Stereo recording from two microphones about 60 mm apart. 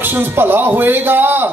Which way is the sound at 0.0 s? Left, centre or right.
Right.